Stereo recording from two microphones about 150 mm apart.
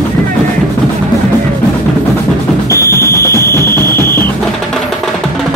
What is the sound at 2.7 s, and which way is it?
Music, 20° left (ahead or behind).